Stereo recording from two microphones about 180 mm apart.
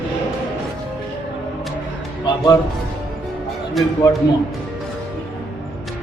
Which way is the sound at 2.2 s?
20° left (ahead or behind).